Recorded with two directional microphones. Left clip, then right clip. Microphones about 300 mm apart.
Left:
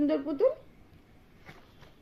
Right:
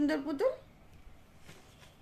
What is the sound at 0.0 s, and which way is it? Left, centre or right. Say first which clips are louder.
Speech: left 3 dB; centre.